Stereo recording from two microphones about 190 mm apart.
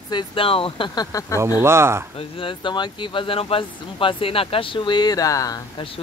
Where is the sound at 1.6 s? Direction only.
15° right (ahead or behind).